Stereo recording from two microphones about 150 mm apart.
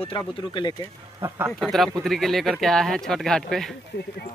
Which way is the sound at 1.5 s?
Centre (ahead or behind).